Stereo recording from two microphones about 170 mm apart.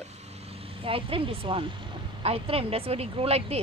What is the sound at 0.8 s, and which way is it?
Speech, 30° right (ahead or behind).